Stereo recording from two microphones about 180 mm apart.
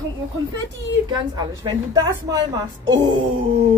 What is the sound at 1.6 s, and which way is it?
Speech, 20° right (ahead or behind).